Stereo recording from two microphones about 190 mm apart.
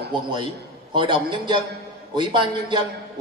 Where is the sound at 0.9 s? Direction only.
25° right (ahead or behind).